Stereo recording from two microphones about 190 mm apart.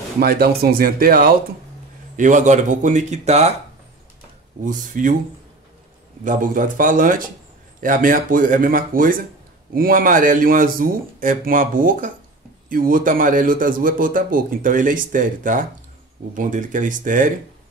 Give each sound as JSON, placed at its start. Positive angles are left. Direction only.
{"t": 0.2, "sound": "a man's voice", "side_deg": -55}
{"t": 4.6, "sound": "a man's voice", "side_deg": -45}
{"t": 6.2, "sound": "a man's voice", "side_deg": -45}